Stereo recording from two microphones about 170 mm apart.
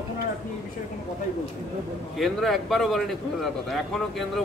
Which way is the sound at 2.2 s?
Centre (ahead or behind).